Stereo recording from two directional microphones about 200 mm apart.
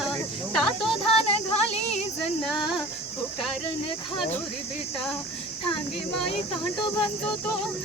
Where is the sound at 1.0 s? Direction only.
30° left (ahead or behind).